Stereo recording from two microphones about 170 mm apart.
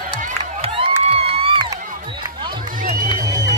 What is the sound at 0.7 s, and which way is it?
Crowd, 35° right (ahead or behind).